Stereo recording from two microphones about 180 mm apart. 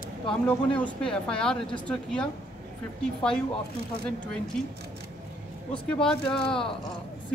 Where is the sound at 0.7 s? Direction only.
5° left (ahead or behind).